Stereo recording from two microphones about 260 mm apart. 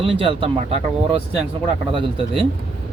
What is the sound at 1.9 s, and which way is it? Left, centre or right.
Speech, right.